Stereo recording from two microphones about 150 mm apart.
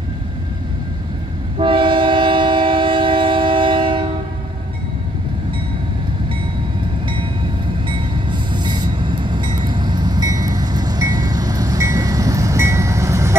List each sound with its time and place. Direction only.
1.6 s train: 35° right (ahead or behind)
7.9 s train: 30° right (ahead or behind)